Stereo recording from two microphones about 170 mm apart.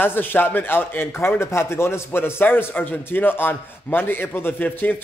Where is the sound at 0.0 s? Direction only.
10° left (ahead or behind).